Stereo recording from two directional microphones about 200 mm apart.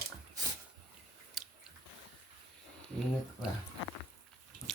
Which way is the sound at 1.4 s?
Centre (ahead or behind).